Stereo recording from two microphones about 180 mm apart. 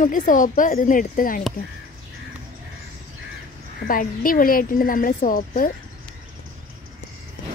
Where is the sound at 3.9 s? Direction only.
50° left (ahead or behind).